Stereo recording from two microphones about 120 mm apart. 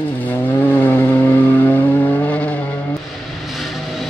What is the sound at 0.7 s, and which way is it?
Vehicle, 15° left (ahead or behind).